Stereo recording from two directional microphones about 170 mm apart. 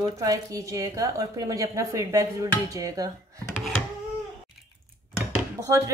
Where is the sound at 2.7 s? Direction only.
20° right (ahead or behind).